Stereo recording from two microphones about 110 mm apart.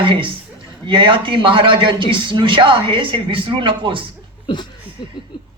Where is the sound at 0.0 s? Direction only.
50° right (ahead or behind).